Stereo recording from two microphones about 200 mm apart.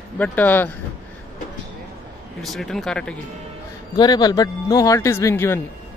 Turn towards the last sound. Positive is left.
turn(degrees=15)  # may be behind; listen again after turning